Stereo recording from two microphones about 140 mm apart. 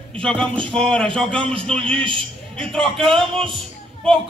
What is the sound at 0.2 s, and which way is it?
A man's voice, 5° left (ahead or behind).